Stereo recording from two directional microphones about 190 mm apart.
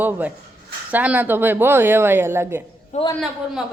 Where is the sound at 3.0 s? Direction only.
30° left (ahead or behind).